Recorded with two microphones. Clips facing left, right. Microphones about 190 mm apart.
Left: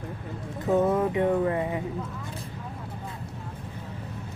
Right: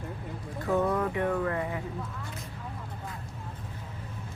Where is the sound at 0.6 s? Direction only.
20° left (ahead or behind).